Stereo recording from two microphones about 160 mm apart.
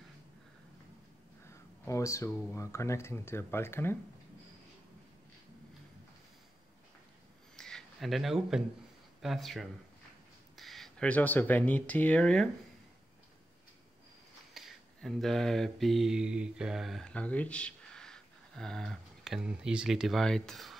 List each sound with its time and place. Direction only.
1.5 s speech: 20° left (ahead or behind)
7.5 s a sound: 5° left (ahead or behind)
9.2 s speech: centre (ahead or behind)
14.5 s mantra: centre (ahead or behind)